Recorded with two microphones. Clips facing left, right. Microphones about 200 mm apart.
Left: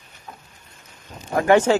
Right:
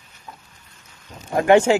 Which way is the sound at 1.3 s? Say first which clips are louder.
Right 2 dB; 25° right (ahead or behind).